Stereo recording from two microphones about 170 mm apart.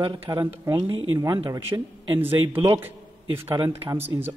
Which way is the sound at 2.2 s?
10° right (ahead or behind).